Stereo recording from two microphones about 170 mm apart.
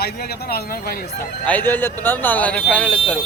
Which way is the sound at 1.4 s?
10° left (ahead or behind).